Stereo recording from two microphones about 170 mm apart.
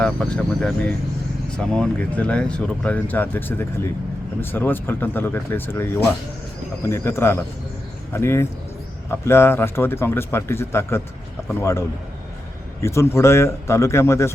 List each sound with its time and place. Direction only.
0.0 s speech: 5° left (ahead or behind)
12.8 s speech: 15° left (ahead or behind)